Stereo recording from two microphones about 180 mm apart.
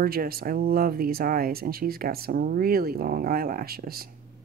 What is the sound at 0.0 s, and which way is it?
Speech, 55° right (ahead or behind).